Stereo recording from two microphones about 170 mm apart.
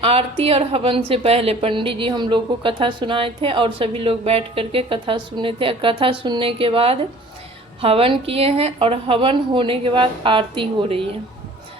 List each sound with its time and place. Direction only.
0.0 s a woman's voice: 35° right (ahead or behind)